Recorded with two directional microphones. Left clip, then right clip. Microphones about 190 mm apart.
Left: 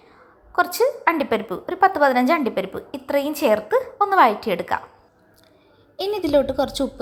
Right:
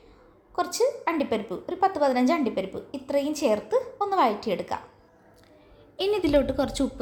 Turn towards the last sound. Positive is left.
turn(degrees=10)  # may be behind; listen again after turning